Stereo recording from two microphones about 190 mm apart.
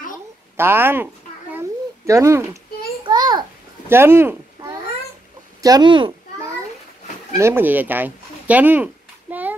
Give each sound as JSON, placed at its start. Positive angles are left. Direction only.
{"t": 0.6, "sound": "speech", "side_deg": -10}
{"t": 2.0, "sound": "speech", "side_deg": -15}
{"t": 3.1, "sound": "babbling", "side_deg": -20}
{"t": 3.9, "sound": "speech", "side_deg": -10}
{"t": 7.3, "sound": "speech", "side_deg": -15}